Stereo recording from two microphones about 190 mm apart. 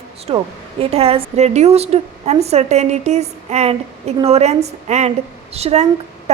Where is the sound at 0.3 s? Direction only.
30° right (ahead or behind).